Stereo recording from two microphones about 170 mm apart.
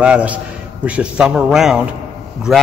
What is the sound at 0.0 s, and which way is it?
A man's voice, 5° right (ahead or behind).